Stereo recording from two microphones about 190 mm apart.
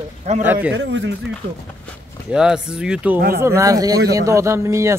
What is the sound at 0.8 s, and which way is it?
Speech, 70° right (ahead or behind).